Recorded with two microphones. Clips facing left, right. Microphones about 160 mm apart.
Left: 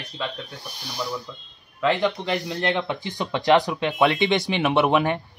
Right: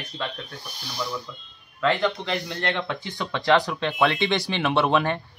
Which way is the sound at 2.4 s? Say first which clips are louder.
Left 3 dB; 20° left (ahead or behind).